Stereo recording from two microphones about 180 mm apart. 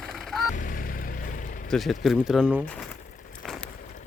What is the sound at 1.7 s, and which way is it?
Speech, centre (ahead or behind).